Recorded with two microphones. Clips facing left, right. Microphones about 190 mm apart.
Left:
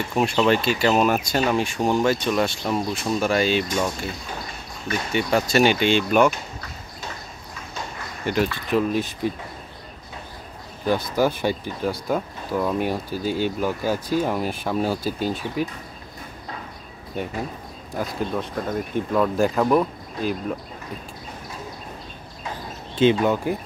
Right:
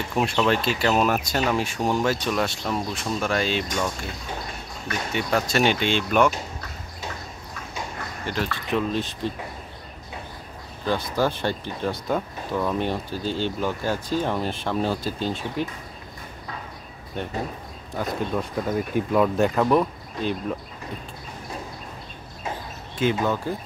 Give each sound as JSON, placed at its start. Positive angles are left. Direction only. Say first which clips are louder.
{"t": 0.5, "sound": "speech", "louder": "left 3 dB", "side_deg": 0}
{"t": 5.1, "sound": "speech", "louder": "left 3 dB", "side_deg": 0}
{"t": 8.3, "sound": "speech", "louder": "left 5 dB", "side_deg": 15}
{"t": 10.9, "sound": "speech", "louder": "left 3 dB", "side_deg": 10}
{"t": 17.2, "sound": "speech", "louder": "left 1 dB", "side_deg": 5}
{"t": 22.9, "sound": "speech", "louder": "left 5 dB", "side_deg": 20}